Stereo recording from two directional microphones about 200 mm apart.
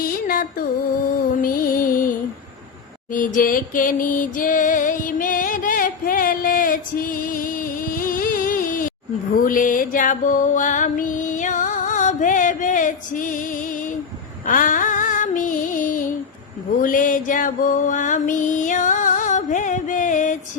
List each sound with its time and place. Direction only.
0.0 s music: 45° left (ahead or behind)
14.4 s female singing: 40° left (ahead or behind)
16.8 s music: 40° left (ahead or behind)